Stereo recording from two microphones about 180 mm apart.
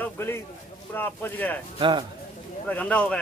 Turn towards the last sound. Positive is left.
turn(degrees=5)  # may be behind; listen again after turning